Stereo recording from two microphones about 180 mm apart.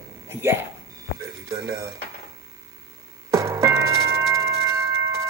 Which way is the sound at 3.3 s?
15° right (ahead or behind).